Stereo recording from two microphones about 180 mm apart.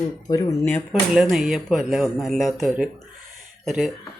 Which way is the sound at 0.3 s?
15° left (ahead or behind).